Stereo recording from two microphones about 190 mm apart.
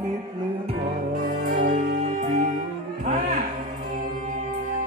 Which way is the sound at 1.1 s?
45° right (ahead or behind).